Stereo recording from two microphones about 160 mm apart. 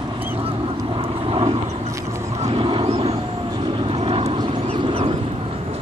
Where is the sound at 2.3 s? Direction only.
40° right (ahead or behind).